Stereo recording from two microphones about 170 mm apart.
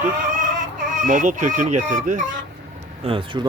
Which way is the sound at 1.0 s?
50° right (ahead or behind).